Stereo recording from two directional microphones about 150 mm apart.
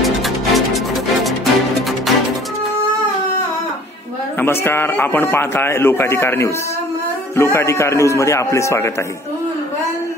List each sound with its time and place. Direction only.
0.0 s music: centre (ahead or behind)
4.4 s a man's voice: 15° left (ahead or behind)